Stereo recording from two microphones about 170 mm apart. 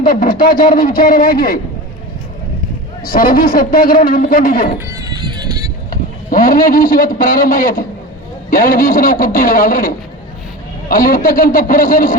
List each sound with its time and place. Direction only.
0.0 s speech: 55° left (ahead or behind)
3.1 s a man's voice: 55° left (ahead or behind)
5.9 s a man's voice: 50° left (ahead or behind)